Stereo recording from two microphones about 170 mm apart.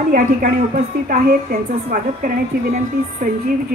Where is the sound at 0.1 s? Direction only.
45° right (ahead or behind).